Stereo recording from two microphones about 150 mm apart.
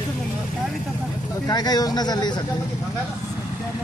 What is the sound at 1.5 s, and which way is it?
Speech, 25° left (ahead or behind).